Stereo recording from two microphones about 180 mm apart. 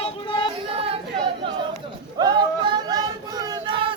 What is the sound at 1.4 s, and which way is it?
Chatter, 30° right (ahead or behind).